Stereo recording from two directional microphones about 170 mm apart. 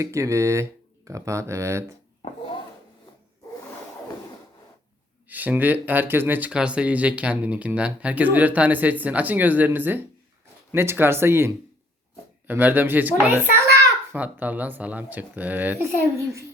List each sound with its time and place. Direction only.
0.0 s speech: 15° right (ahead or behind)
5.3 s speech: 10° right (ahead or behind)